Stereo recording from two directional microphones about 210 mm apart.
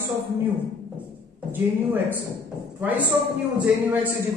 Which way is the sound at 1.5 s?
10° right (ahead or behind).